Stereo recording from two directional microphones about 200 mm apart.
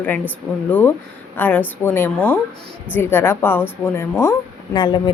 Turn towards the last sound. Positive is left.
turn(degrees=20)  # may be behind; listen again after turning